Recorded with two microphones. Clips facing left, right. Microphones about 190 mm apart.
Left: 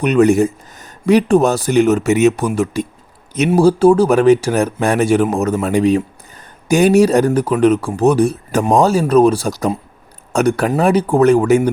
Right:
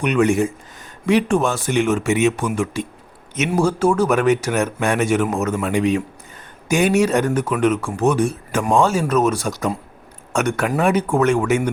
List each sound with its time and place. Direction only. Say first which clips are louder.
0.0 s speech: left 5 dB; 35° left (ahead or behind)